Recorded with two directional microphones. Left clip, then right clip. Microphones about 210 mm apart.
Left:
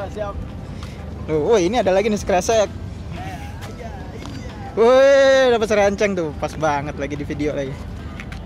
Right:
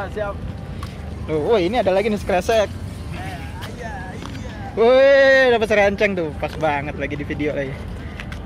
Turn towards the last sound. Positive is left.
turn(degrees=15)  # may be behind; listen again after turning